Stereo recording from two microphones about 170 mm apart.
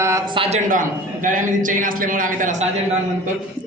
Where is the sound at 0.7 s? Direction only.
50° right (ahead or behind).